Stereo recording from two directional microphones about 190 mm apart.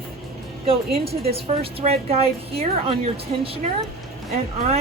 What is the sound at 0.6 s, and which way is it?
A woman's voice, 30° right (ahead or behind).